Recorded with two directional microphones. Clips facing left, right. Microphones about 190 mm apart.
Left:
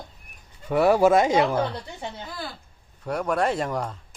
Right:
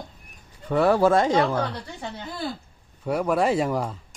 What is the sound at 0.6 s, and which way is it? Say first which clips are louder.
Speech: left 1 dB; 10° left (ahead or behind).